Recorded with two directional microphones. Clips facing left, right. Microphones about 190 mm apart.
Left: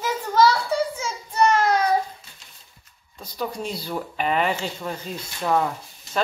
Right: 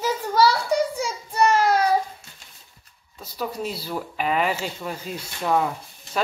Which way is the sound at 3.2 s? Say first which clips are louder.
Even; 5° right (ahead or behind).